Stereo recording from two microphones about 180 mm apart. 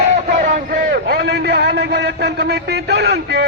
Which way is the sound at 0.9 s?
65° right (ahead or behind).